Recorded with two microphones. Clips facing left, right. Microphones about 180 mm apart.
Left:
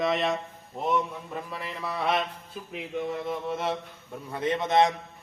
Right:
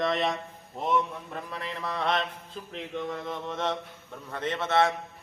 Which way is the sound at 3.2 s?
10° left (ahead or behind).